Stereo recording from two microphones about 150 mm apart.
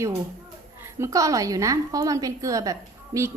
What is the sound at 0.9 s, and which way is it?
A woman's voice, 20° right (ahead or behind).